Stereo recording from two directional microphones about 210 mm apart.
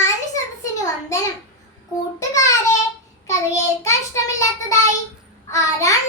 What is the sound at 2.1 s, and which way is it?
Child singing, 15° left (ahead or behind).